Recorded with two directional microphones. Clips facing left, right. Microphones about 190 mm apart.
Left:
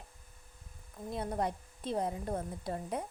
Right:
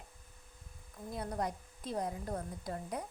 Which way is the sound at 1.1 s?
25° left (ahead or behind).